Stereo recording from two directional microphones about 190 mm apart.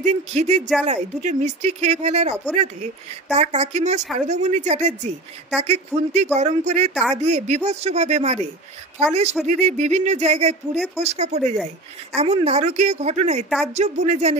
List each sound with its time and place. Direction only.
0.0 s a woman's voice: 35° right (ahead or behind)